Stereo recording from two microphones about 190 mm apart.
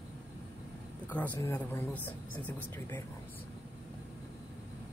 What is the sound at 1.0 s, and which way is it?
Speech, 10° left (ahead or behind).